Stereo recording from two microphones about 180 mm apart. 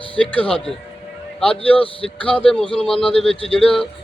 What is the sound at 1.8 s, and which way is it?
Speech, 30° left (ahead or behind).